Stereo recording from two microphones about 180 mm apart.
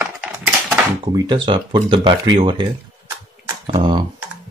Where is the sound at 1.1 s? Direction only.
25° right (ahead or behind).